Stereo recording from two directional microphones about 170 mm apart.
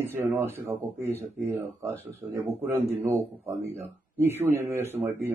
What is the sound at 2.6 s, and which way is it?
Speech, 15° right (ahead or behind).